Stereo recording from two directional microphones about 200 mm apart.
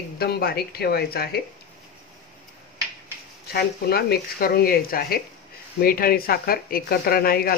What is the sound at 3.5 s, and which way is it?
Speech, 50° left (ahead or behind).